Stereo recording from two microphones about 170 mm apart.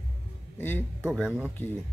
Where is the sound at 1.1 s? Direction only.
Centre (ahead or behind).